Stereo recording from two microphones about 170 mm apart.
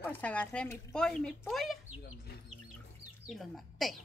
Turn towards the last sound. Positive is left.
turn(degrees=0)  # may be behind; listen again after turning